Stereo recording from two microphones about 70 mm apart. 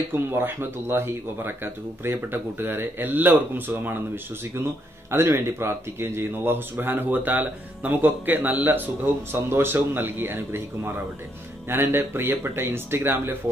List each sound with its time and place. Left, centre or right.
0.1 s a man's voice: right
11.7 s speech: right